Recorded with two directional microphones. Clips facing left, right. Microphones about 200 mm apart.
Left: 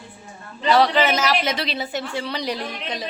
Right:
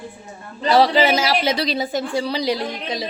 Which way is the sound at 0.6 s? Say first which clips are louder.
Right 2 dB; 35° right (ahead or behind).